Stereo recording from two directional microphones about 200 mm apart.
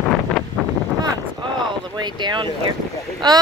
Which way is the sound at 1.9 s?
20° right (ahead or behind).